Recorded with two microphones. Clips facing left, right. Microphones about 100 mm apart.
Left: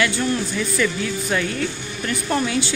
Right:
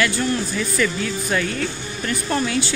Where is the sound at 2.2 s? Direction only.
15° left (ahead or behind).